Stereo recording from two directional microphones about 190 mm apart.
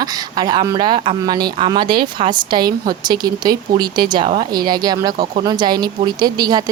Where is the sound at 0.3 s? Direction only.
20° right (ahead or behind).